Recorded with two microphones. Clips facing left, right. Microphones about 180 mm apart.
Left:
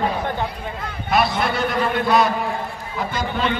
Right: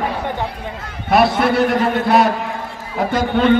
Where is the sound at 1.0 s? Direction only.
65° right (ahead or behind).